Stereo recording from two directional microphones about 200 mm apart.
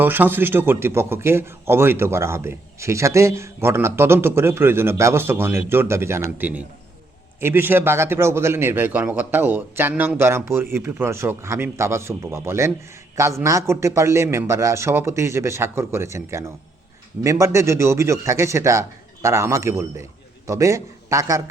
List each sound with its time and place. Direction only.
0.0 s a man's voice: 10° right (ahead or behind)